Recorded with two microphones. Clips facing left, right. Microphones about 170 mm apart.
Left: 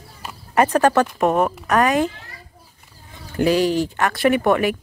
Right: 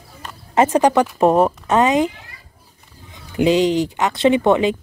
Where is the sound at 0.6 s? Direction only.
20° right (ahead or behind).